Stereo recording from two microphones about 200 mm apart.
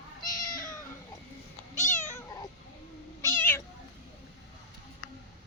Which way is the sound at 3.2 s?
10° left (ahead or behind).